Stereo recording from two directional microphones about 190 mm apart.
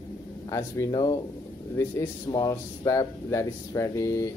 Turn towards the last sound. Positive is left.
turn(degrees=15)  # may be behind; listen again after turning